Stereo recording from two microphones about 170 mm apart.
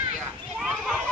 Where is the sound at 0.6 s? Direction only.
Centre (ahead or behind).